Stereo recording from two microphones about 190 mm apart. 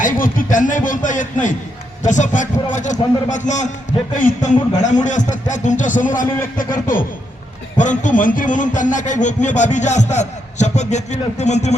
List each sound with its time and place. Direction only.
0.0 s a man's voice: 45° left (ahead or behind)
7.8 s speech: 40° left (ahead or behind)